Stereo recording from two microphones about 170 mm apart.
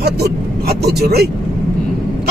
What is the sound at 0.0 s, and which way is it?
Vehicle, 70° right (ahead or behind).